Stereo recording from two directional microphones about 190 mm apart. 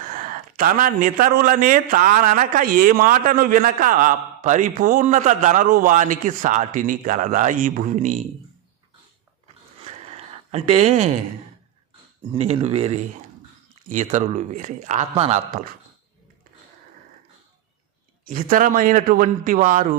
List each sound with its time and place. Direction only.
0.0 s a man's voice: 45° right (ahead or behind)
9.8 s a sound: 35° right (ahead or behind)
12.3 s a man's voice: 30° right (ahead or behind)
18.3 s a man's voice: 45° right (ahead or behind)